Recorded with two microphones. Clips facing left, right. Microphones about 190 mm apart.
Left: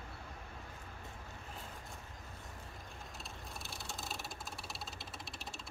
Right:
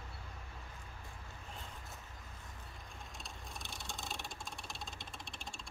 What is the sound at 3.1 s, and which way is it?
Vehicle, 5° left (ahead or behind).